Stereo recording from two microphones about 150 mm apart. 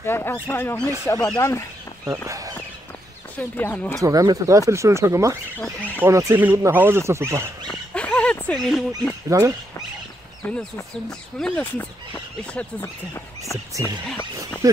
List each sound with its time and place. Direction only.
0.0 s speech: 15° left (ahead or behind)
2.0 s speech: 20° right (ahead or behind)
3.3 s speech: 10° left (ahead or behind)
4.0 s speech: 25° right (ahead or behind)
5.6 s speech: 10° left (ahead or behind)
6.0 s speech: 20° right (ahead or behind)
7.6 s dog: 10° left (ahead or behind)
9.3 s speech: 20° right (ahead or behind)
10.4 s speech: 10° left (ahead or behind)
12.8 s speech: 20° left (ahead or behind)
14.6 s speech: 20° right (ahead or behind)